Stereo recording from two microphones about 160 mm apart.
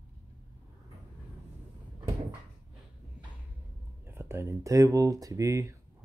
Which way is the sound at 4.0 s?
15° right (ahead or behind).